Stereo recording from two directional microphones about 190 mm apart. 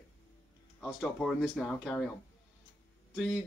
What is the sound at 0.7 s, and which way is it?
A man's voice, 5° left (ahead or behind).